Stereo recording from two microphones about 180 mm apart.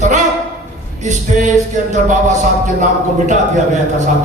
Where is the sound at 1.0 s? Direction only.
45° right (ahead or behind).